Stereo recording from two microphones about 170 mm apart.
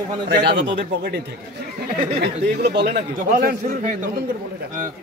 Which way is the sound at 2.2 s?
75° right (ahead or behind).